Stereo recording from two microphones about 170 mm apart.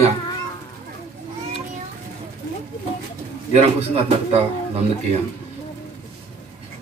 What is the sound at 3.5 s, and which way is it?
Speech, 35° right (ahead or behind).